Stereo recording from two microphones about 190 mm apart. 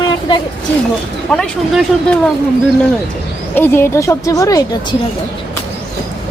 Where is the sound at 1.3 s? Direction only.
5° left (ahead or behind).